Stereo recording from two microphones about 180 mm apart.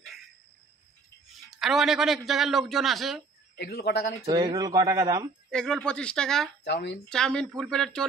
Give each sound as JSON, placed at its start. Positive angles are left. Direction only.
{"t": 1.5, "sound": "speech", "side_deg": 0}
{"t": 3.5, "sound": "a man's voice", "side_deg": 65}
{"t": 4.3, "sound": "speech", "side_deg": -20}
{"t": 5.5, "sound": "speech", "side_deg": 5}
{"t": 6.6, "sound": "speech", "side_deg": 70}
{"t": 7.1, "sound": "speech", "side_deg": 5}